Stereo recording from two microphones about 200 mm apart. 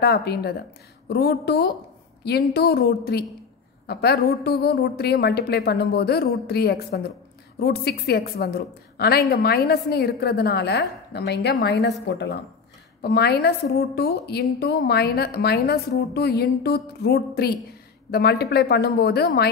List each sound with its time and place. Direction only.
0.0 s a woman's voice: 55° left (ahead or behind)